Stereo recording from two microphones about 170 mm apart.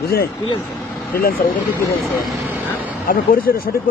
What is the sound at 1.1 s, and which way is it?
Speech, 60° left (ahead or behind).